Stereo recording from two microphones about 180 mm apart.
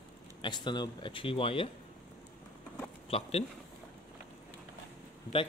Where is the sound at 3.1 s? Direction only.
35° left (ahead or behind).